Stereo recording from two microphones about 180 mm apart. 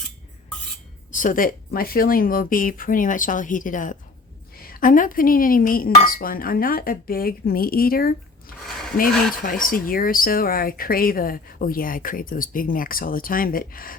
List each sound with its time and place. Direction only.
1.1 s a woman's voice: 45° left (ahead or behind)